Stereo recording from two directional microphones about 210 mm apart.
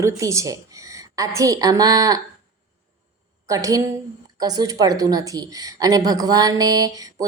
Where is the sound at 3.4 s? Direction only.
15° right (ahead or behind).